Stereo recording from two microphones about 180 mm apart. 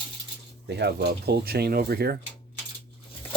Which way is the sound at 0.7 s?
65° right (ahead or behind).